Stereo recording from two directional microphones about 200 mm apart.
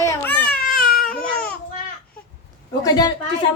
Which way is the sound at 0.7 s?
45° left (ahead or behind).